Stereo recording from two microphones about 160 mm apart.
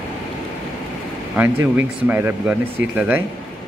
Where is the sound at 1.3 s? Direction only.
10° right (ahead or behind).